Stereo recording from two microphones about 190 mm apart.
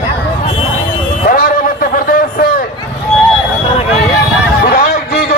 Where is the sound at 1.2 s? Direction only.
50° left (ahead or behind).